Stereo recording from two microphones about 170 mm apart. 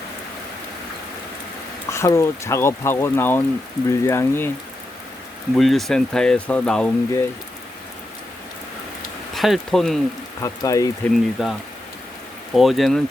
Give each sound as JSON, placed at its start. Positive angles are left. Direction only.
{"t": 1.9, "sound": "speech", "side_deg": 15}
{"t": 5.5, "sound": "speech", "side_deg": 0}
{"t": 9.3, "sound": "speech", "side_deg": 0}
{"t": 10.4, "sound": "speech", "side_deg": 20}
{"t": 11.1, "sound": "speech", "side_deg": 0}
{"t": 12.5, "sound": "speech", "side_deg": 0}